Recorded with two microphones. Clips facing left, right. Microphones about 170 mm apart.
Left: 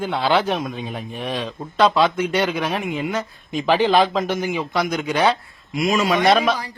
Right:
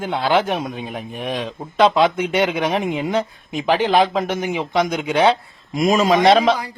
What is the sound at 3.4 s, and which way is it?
A man's voice, 15° right (ahead or behind).